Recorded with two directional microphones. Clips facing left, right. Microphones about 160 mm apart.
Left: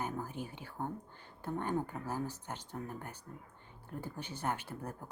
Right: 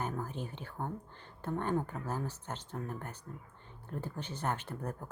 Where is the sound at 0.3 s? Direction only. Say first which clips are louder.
Right 1 dB; 10° left (ahead or behind).